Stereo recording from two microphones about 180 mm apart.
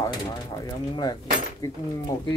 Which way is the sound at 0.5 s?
20° left (ahead or behind).